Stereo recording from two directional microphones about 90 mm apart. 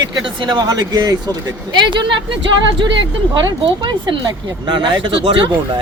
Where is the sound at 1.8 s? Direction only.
60° right (ahead or behind).